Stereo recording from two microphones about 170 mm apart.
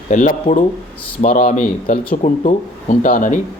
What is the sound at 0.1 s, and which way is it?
Speech, 50° left (ahead or behind).